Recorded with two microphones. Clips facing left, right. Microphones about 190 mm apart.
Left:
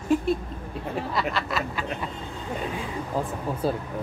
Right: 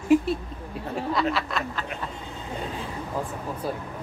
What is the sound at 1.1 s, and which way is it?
Speech, 5° left (ahead or behind).